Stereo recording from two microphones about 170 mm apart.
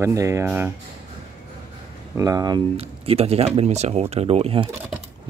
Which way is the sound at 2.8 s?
35° right (ahead or behind).